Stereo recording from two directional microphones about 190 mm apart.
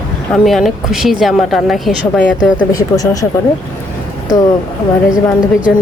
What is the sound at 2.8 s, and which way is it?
Speech, 20° left (ahead or behind).